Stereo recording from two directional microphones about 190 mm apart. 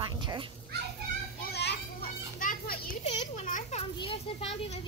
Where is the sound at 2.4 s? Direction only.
50° left (ahead or behind).